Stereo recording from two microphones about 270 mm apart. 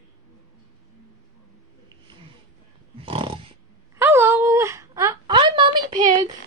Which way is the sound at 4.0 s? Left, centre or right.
Centre.